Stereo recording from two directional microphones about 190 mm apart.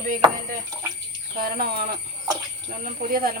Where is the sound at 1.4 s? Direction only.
55° right (ahead or behind).